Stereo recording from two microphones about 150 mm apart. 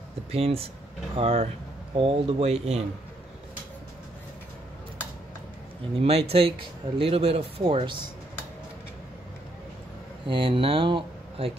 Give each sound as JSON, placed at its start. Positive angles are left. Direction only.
{"t": 0.3, "sound": "speech", "side_deg": -40}
{"t": 5.9, "sound": "speech", "side_deg": -40}
{"t": 10.2, "sound": "speech", "side_deg": -35}